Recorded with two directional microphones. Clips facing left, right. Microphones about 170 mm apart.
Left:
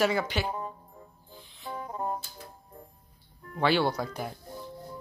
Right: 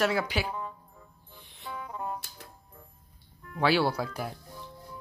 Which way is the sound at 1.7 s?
35° left (ahead or behind).